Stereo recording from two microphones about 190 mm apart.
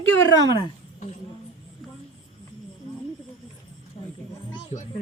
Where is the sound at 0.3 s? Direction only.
25° left (ahead or behind).